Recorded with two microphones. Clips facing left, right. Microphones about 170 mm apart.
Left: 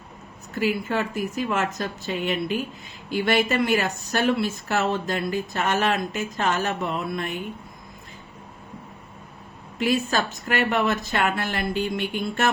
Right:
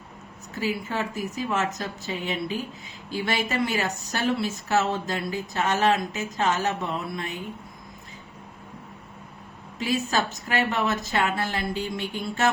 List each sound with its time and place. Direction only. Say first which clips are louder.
0.6 s speech: left 4 dB; 60° left (ahead or behind)
9.7 s speech: left 2 dB; 60° left (ahead or behind)